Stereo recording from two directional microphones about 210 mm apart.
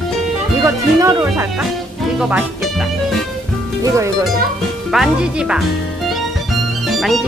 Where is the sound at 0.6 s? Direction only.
15° right (ahead or behind).